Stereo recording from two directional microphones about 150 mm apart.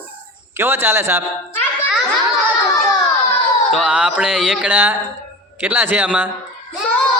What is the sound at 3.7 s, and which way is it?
Carnatic music, 5° right (ahead or behind).